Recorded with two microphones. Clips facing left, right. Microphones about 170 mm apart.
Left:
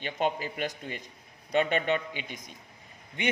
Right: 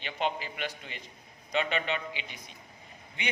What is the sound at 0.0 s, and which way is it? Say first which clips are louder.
A man's voice: left 3 dB; 45° left (ahead or behind).